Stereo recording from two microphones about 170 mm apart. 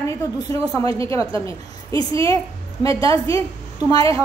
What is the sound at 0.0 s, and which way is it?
A woman's voice, 20° left (ahead or behind).